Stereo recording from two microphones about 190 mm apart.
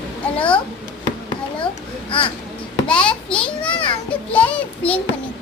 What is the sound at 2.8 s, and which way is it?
Speech, 5° left (ahead or behind).